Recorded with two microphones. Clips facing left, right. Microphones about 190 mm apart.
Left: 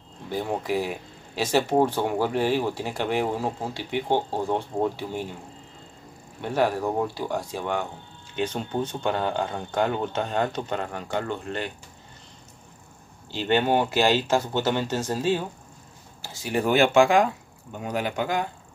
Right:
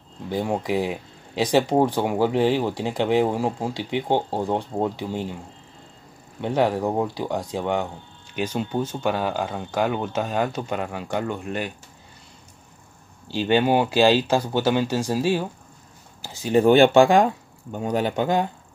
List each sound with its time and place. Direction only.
0.3 s speech: 15° right (ahead or behind)
6.4 s speech: 20° right (ahead or behind)
8.4 s speech: 10° right (ahead or behind)
13.3 s speech: 15° right (ahead or behind)